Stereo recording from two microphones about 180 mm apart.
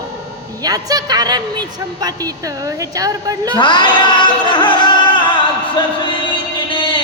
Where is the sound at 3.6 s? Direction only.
25° left (ahead or behind).